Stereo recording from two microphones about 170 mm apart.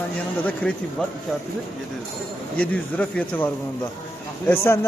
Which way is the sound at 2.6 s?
5° left (ahead or behind).